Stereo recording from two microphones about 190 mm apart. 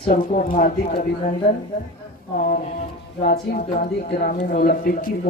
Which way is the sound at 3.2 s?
45° left (ahead or behind).